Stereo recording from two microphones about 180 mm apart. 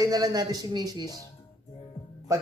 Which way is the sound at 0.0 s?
20° right (ahead or behind).